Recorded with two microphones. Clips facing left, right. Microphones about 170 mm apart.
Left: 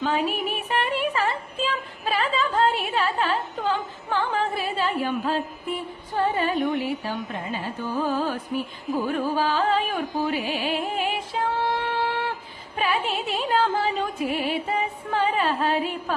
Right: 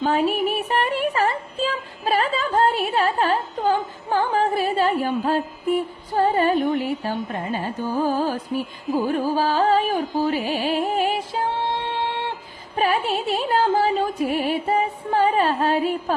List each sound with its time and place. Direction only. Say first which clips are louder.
0.0 s a sound: right 4 dB; 35° right (ahead or behind)
7.9 s music: right 3 dB; 35° right (ahead or behind)
12.7 s music: right 4 dB; 40° right (ahead or behind)